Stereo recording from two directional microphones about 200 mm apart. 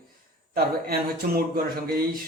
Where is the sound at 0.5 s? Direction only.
50° right (ahead or behind).